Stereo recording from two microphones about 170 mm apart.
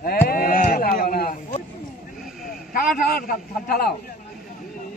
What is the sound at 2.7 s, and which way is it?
A man's voice, 60° left (ahead or behind).